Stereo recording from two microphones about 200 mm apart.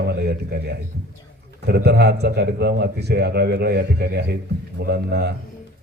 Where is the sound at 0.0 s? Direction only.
55° right (ahead or behind).